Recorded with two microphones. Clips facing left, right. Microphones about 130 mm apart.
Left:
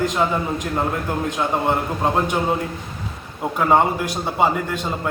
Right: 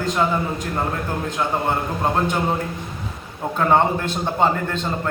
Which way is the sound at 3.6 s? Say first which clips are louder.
Even; 10° left (ahead or behind).